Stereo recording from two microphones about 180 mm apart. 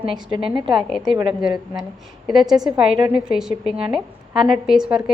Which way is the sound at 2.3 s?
Centre (ahead or behind).